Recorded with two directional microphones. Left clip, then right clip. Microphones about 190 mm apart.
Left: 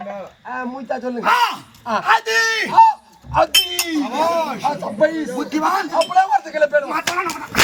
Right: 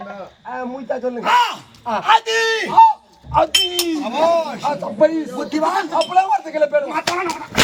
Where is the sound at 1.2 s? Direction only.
10° left (ahead or behind).